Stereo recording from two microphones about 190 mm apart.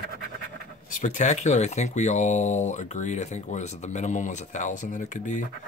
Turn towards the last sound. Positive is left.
turn(degrees=40)  # may be behind; listen again after turning